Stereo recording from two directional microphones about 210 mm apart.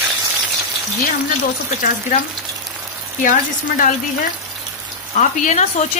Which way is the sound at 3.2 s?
35° left (ahead or behind).